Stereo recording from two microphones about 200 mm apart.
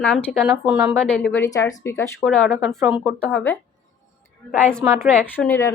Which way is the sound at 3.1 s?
5° left (ahead or behind).